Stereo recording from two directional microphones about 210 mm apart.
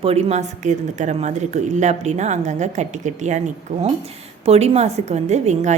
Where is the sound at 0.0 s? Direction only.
30° right (ahead or behind).